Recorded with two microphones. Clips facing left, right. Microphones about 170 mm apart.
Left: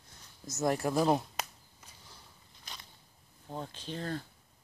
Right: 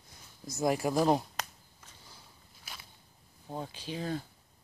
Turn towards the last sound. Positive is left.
turn(degrees=-5)  # may be behind; listen again after turning